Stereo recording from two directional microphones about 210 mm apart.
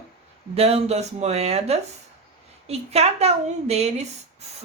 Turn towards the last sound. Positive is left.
turn(degrees=-30)  # may be behind; listen again after turning